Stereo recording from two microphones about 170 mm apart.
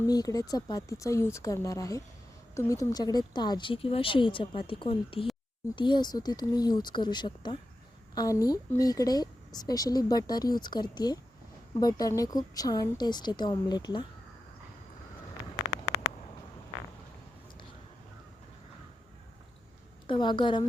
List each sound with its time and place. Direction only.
0.1 s speech: 20° left (ahead or behind)
20.1 s a woman's voice: 30° left (ahead or behind)